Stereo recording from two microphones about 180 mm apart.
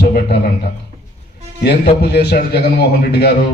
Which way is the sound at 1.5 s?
65° left (ahead or behind).